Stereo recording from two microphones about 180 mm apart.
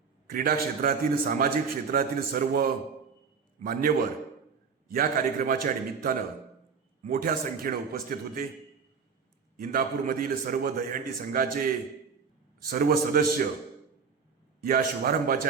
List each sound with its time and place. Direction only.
0.3 s a man's voice: 50° right (ahead or behind)
9.6 s a man's voice: 55° right (ahead or behind)
12.7 s a man's voice: 55° right (ahead or behind)
14.6 s a man's voice: 55° right (ahead or behind)